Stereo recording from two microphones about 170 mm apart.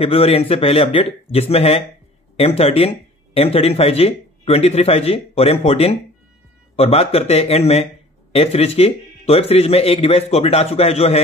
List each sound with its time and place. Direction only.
0.0 s speech: 35° left (ahead or behind)